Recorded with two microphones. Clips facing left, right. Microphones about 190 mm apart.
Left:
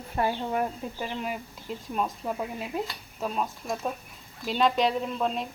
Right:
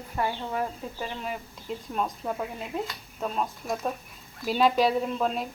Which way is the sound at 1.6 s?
5° left (ahead or behind).